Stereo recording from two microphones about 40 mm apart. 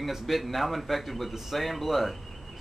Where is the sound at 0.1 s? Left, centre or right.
Centre.